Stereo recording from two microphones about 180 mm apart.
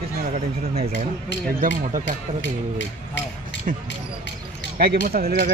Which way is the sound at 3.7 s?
50° right (ahead or behind).